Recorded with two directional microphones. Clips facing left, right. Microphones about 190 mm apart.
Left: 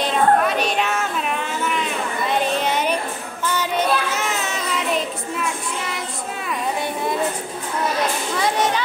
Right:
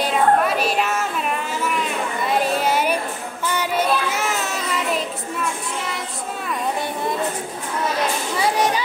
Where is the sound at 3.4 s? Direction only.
10° right (ahead or behind).